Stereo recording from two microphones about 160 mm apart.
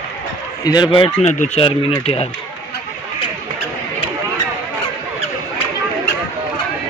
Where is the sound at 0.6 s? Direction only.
25° left (ahead or behind).